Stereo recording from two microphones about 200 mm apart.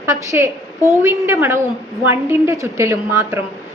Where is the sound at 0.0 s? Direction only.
15° right (ahead or behind).